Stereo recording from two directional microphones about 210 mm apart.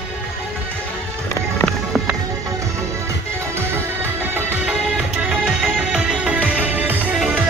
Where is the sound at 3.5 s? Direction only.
10° right (ahead or behind).